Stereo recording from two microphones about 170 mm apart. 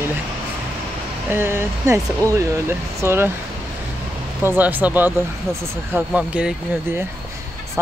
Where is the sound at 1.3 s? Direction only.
15° right (ahead or behind).